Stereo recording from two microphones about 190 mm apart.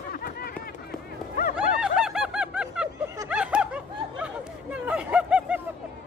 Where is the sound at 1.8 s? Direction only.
5° right (ahead or behind).